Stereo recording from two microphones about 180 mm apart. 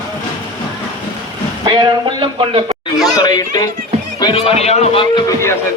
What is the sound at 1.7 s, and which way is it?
A man's voice, 25° right (ahead or behind).